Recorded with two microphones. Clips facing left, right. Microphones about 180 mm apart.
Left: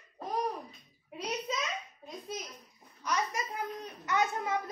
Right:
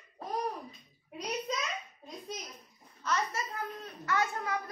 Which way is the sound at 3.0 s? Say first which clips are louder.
Even; 15° left (ahead or behind).